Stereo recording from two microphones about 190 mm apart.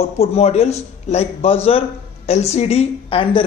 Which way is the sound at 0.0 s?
30° left (ahead or behind).